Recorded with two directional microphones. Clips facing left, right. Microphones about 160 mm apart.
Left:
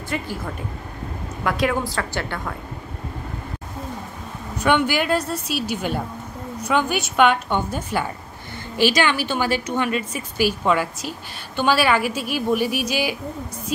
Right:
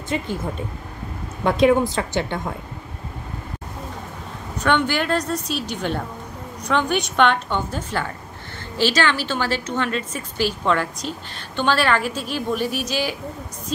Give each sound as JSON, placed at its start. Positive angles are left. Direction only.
{"t": 0.1, "sound": "a woman's voice", "side_deg": -20}
{"t": 1.4, "sound": "a woman's voice", "side_deg": -20}
{"t": 4.6, "sound": "a woman's voice", "side_deg": 10}